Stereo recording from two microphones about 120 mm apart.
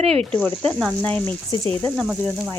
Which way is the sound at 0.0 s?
55° right (ahead or behind).